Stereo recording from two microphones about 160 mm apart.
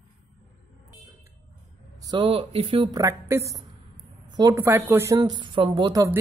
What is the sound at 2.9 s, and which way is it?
Speech, 20° right (ahead or behind).